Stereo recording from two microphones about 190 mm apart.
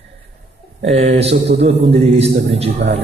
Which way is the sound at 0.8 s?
35° right (ahead or behind).